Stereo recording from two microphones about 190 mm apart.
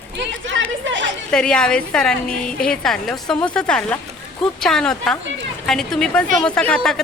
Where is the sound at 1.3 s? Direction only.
5° left (ahead or behind).